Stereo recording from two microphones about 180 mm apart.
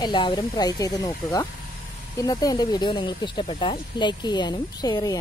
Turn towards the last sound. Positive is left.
turn(degrees=20)  # may be behind; listen again after turning